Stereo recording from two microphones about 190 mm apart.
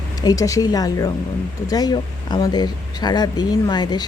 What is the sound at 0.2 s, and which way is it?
Speech, 20° left (ahead or behind).